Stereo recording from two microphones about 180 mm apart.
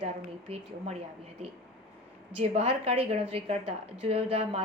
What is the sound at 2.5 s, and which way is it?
A woman's voice, 35° right (ahead or behind).